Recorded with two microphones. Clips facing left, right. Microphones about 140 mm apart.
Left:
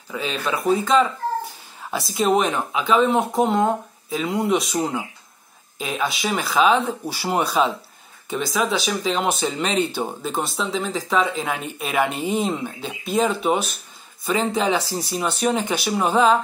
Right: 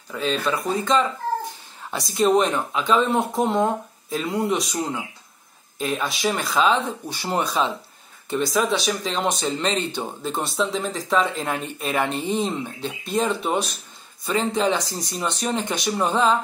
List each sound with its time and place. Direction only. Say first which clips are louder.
0.1 s speech: right 1 dB; 5° left (ahead or behind)
4.7 s speech: left 3 dB; 30° left (ahead or behind)
5.8 s speech: even; centre (ahead or behind)